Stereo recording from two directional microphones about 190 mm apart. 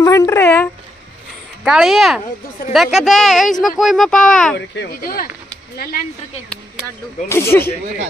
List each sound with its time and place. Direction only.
0.0 s speech: 15° left (ahead or behind)
1.6 s speech: 5° right (ahead or behind)
4.6 s speech: 55° left (ahead or behind)
7.2 s speech: 15° left (ahead or behind)